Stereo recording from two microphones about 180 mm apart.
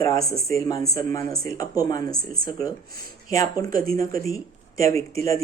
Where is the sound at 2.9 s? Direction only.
55° right (ahead or behind).